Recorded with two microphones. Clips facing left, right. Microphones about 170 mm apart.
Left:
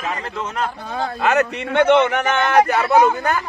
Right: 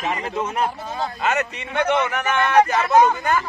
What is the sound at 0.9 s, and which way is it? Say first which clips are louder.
Speech: left 4 dB; 60° left (ahead or behind).